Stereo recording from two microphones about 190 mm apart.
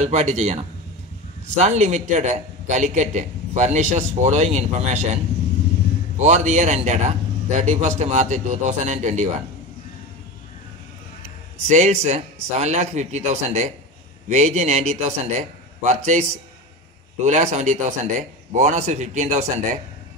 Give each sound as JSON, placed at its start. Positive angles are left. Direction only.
{"t": 0.0, "sound": "a man's voice", "side_deg": -35}
{"t": 11.6, "sound": "a man's voice", "side_deg": -35}